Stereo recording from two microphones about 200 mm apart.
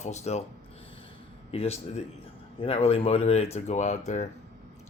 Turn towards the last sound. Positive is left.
turn(degrees=35)  # may be behind; listen again after turning